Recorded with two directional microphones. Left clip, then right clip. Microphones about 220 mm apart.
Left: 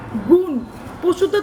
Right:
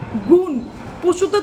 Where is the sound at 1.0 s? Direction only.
20° right (ahead or behind).